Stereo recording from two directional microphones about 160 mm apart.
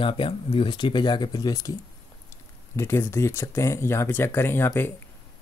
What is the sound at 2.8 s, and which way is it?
Speech, 15° left (ahead or behind).